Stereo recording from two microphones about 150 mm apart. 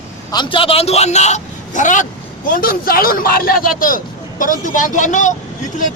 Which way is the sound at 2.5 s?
75° left (ahead or behind).